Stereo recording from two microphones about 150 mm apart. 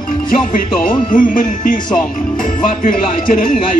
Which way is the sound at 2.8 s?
65° left (ahead or behind).